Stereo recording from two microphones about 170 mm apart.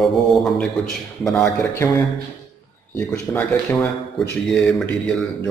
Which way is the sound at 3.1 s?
15° left (ahead or behind).